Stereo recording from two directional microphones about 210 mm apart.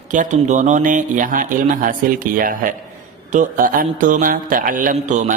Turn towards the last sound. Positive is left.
turn(degrees=-35)  # may be behind; listen again after turning